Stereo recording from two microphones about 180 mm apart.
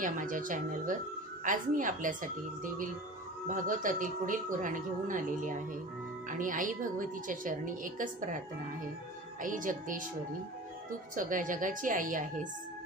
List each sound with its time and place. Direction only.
0.0 s speech: 45° right (ahead or behind)
9.4 s speech: 45° right (ahead or behind)
11.1 s speech: 45° right (ahead or behind)